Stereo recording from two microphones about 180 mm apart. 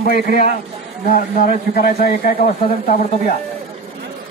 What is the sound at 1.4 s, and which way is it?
A man's voice, 55° left (ahead or behind).